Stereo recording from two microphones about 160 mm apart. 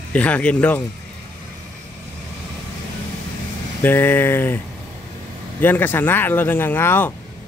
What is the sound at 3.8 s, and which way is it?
Speech, 10° left (ahead or behind).